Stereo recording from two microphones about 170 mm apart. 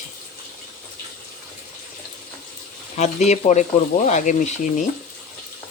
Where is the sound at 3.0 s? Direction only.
45° left (ahead or behind).